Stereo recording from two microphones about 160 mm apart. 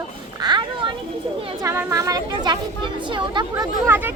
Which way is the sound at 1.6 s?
15° right (ahead or behind).